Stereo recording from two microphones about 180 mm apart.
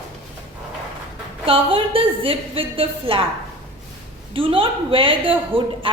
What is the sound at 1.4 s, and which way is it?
A woman's voice, 30° right (ahead or behind).